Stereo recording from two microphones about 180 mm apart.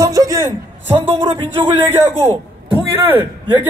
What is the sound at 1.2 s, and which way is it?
Speech, 25° right (ahead or behind).